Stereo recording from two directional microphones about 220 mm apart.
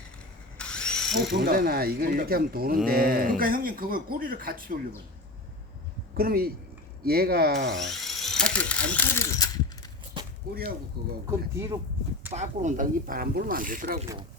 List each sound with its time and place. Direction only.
0.6 s drill: 5° left (ahead or behind)
1.1 s speech: 50° right (ahead or behind)
6.1 s speech: 45° right (ahead or behind)
7.9 s speech: centre (ahead or behind)
10.5 s speech: 40° right (ahead or behind)
11.3 s speech: 10° right (ahead or behind)
12.3 s speech: 30° right (ahead or behind)